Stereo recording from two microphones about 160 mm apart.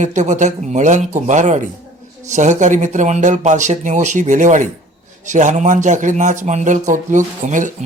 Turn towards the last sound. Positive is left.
turn(degrees=-50)  # may be behind; listen again after turning